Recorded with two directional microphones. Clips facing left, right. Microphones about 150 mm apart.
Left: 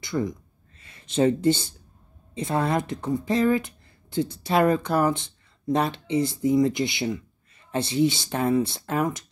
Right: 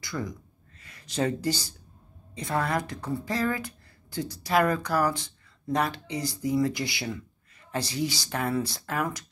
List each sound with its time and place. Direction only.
0.0 s speech: 25° left (ahead or behind)